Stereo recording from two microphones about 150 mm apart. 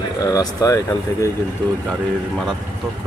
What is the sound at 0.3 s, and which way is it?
Speech, 25° left (ahead or behind).